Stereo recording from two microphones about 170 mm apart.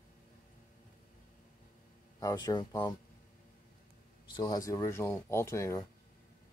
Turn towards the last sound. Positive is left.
turn(degrees=15)  # may be behind; listen again after turning